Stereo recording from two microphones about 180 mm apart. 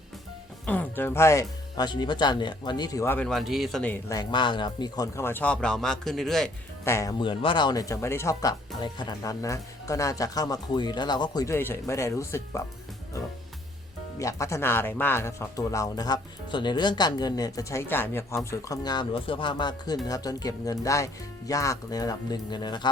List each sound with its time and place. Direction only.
0.6 s speech: 10° left (ahead or behind)
4.1 s speech: 25° left (ahead or behind); by 6.5 s centre (ahead or behind)
6.8 s speech: 15° left (ahead or behind)
14.2 s speech: 15° left (ahead or behind)